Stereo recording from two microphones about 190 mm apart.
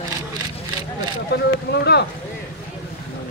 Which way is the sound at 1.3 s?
60° left (ahead or behind).